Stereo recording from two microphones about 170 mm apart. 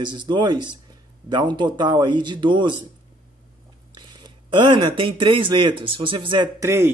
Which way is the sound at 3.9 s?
25° right (ahead or behind).